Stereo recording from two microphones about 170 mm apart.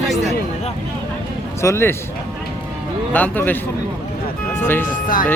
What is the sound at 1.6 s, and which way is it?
Speech, 15° left (ahead or behind).